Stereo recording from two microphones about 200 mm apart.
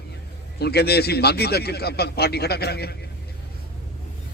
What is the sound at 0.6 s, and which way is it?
A man's voice, 55° left (ahead or behind).